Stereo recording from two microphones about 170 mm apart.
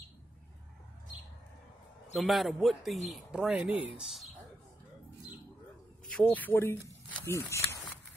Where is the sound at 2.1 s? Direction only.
Centre (ahead or behind).